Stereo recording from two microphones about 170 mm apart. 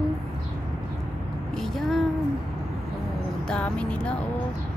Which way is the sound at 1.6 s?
Centre (ahead or behind).